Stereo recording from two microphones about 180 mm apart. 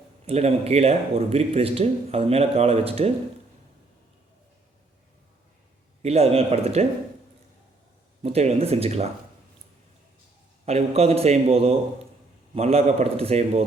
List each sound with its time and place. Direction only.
0.3 s speech: 35° right (ahead or behind)
6.0 s speech: 35° right (ahead or behind)
8.2 s speech: 35° right (ahead or behind)
10.7 s speech: 35° right (ahead or behind)